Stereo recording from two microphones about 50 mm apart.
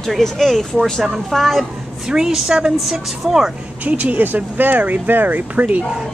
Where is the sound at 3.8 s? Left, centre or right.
Right.